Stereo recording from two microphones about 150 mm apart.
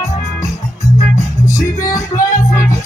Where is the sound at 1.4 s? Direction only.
20° left (ahead or behind).